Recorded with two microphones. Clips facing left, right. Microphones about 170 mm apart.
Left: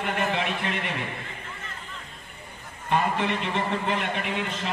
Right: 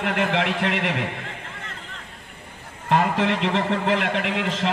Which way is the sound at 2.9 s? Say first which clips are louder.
Right 4 dB; 90° right.